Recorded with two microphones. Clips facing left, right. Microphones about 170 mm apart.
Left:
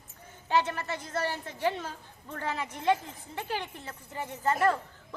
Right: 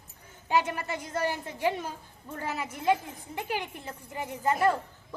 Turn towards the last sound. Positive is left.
turn(degrees=-15)  # may be behind; listen again after turning